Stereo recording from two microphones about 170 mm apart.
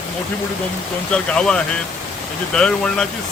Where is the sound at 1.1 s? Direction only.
5° left (ahead or behind).